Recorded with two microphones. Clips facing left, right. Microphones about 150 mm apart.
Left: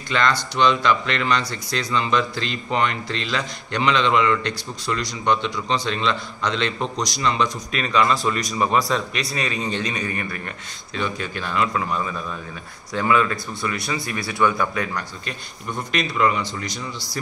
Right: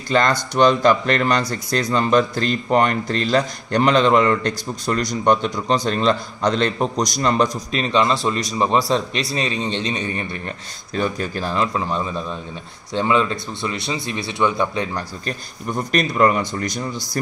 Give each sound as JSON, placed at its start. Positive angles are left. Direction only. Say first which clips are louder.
{"t": 0.1, "sound": "speech", "louder": "right 4 dB", "side_deg": -45}
{"t": 7.7, "sound": "a man's voice", "louder": "even", "side_deg": -30}
{"t": 11.0, "sound": "a man's voice", "louder": "right 4 dB", "side_deg": -40}
{"t": 15.9, "sound": "speech", "louder": "right 4 dB", "side_deg": -45}